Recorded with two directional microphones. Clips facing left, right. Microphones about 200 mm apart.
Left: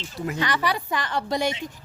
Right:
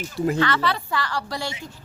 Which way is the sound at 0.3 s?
15° left (ahead or behind).